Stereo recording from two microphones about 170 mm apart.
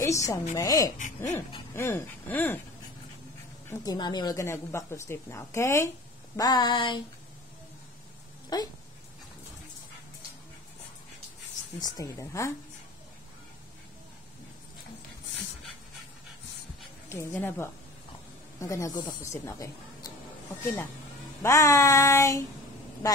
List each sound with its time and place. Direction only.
0.0 s a woman's voice: 20° left (ahead or behind)
0.6 s a sound: 20° left (ahead or behind)
0.9 s speech: 50° left (ahead or behind)
1.8 s speech: 15° left (ahead or behind)
3.6 s speech: 20° left (ahead or behind)
6.3 s a sound: 25° left (ahead or behind)
8.5 s a sound: 25° left (ahead or behind)
11.8 s speech: 20° left (ahead or behind)
17.1 s speech: 15° left (ahead or behind)
21.4 s speech: 20° left (ahead or behind)